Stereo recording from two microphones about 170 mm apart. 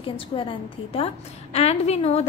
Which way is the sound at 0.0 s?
30° left (ahead or behind).